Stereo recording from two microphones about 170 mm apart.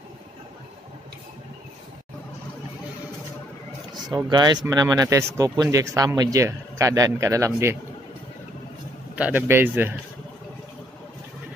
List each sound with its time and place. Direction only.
4.1 s speech: 25° right (ahead or behind)
9.1 s speech: 10° right (ahead or behind)